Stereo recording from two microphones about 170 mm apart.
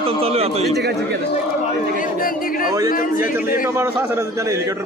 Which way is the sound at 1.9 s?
55° left (ahead or behind).